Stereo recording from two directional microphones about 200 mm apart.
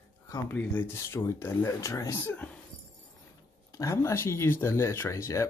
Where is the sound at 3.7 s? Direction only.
15° left (ahead or behind).